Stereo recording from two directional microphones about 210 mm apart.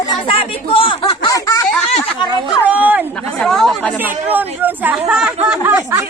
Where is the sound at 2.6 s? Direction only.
10° right (ahead or behind).